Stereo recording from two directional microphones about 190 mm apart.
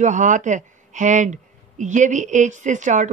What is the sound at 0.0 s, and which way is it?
A woman's voice, 40° right (ahead or behind).